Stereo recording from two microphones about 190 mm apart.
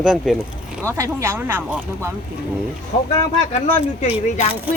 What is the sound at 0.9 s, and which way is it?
Speech, 15° right (ahead or behind).